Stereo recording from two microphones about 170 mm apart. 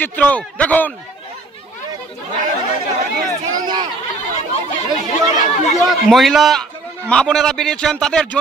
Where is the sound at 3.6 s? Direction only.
25° right (ahead or behind).